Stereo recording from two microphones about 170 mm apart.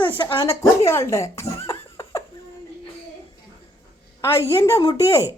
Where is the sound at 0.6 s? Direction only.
15° left (ahead or behind).